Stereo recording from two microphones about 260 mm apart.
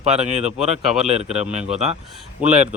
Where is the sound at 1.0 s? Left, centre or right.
Right.